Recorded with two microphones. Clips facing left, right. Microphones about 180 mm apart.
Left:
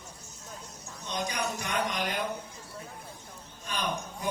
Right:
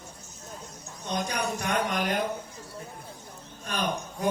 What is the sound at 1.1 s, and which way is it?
Speech, 55° right (ahead or behind).